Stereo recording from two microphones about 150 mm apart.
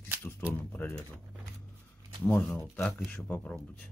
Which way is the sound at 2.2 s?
5° left (ahead or behind).